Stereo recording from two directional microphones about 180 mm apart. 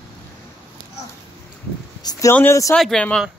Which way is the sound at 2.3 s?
15° left (ahead or behind).